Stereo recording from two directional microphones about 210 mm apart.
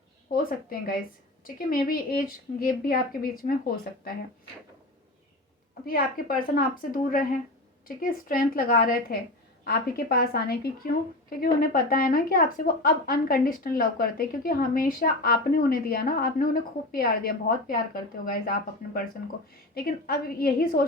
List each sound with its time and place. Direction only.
0.3 s speech: 45° left (ahead or behind)
5.8 s speech: 45° left (ahead or behind)